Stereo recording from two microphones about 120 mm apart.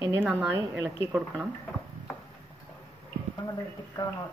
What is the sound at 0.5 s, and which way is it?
Speech, 20° right (ahead or behind).